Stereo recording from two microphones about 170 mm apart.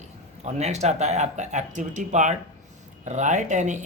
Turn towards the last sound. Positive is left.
turn(degrees=-45)  # may be behind; listen again after turning